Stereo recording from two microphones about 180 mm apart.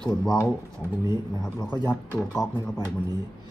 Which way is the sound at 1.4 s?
10° left (ahead or behind).